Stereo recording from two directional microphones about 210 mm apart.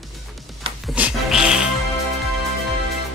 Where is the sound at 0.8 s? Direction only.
5° right (ahead or behind).